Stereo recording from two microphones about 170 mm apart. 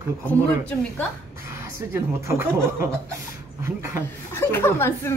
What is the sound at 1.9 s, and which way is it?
Speech, 15° right (ahead or behind).